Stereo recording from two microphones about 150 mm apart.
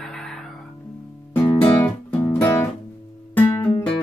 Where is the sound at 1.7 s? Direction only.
10° left (ahead or behind).